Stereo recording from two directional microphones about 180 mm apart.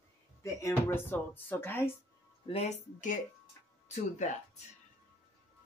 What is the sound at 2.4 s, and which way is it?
Speech, 35° left (ahead or behind).